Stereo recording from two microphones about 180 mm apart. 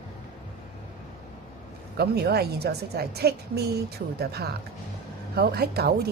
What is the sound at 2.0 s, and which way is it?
A woman's voice, 65° right (ahead or behind).